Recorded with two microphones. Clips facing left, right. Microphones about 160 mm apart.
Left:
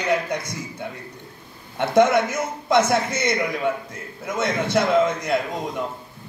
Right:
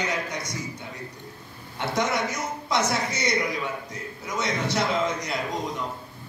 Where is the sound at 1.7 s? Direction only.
55° left (ahead or behind).